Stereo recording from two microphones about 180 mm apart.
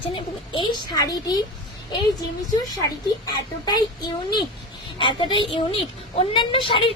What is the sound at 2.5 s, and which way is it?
A woman's voice, 20° left (ahead or behind).